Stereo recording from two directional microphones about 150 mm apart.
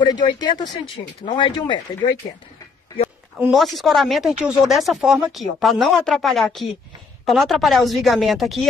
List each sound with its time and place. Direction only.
0.0 s speech: 25° left (ahead or behind)
3.3 s speech: 5° right (ahead or behind)